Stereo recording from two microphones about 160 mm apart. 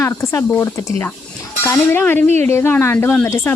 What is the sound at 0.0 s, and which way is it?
A woman's voice, 20° left (ahead or behind).